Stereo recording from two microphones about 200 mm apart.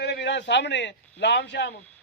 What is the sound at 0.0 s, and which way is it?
A man's voice, 55° left (ahead or behind).